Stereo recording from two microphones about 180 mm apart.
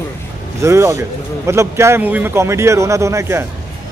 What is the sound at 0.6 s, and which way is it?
Speech, 15° right (ahead or behind).